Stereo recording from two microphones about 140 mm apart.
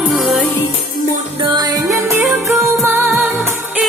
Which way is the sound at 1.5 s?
30° right (ahead or behind).